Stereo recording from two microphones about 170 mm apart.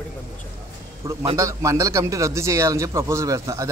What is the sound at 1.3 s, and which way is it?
Speech, 20° right (ahead or behind).